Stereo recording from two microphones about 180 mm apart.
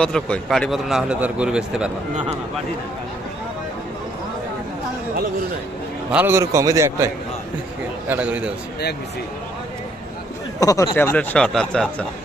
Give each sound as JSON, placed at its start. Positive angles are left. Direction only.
{"t": 0.0, "sound": "a man's voice", "side_deg": 5}
{"t": 6.1, "sound": "a man's voice", "side_deg": -10}
{"t": 10.6, "sound": "speech", "side_deg": 20}